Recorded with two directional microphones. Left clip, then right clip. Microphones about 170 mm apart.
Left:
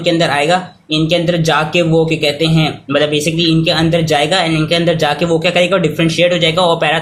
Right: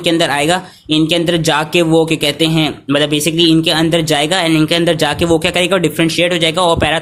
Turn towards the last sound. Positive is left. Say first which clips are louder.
# left 1 dB
turn(degrees=-40)  # may be behind; listen again after turning